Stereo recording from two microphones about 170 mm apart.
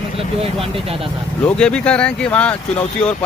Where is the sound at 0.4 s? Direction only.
35° right (ahead or behind).